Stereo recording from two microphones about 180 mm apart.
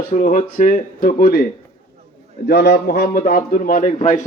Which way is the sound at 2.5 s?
65° left (ahead or behind).